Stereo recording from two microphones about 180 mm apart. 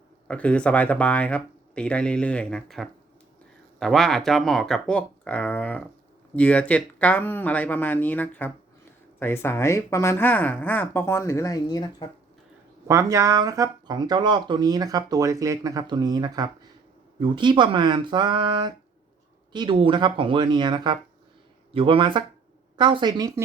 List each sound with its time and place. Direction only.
0.3 s speech: 5° left (ahead or behind)
12.9 s speech: 15° right (ahead or behind)